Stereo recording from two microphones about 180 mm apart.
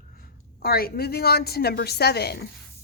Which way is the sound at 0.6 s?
60° left (ahead or behind).